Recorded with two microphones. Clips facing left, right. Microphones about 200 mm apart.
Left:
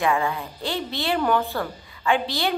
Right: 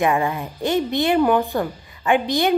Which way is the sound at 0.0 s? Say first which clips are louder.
Right 3 dB; 20° right (ahead or behind).